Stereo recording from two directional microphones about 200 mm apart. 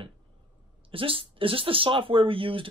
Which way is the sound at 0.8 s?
25° right (ahead or behind).